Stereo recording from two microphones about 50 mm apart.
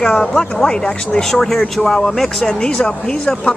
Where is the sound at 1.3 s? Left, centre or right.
Centre.